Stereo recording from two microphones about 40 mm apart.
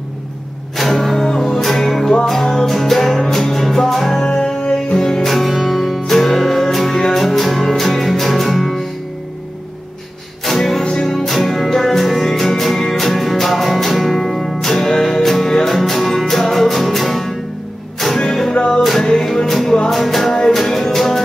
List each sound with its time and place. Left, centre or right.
0.7 s music: centre
4.6 s music: left
5.1 s music: centre
10.4 s music: centre
10.8 s music: centre
11.1 s music: centre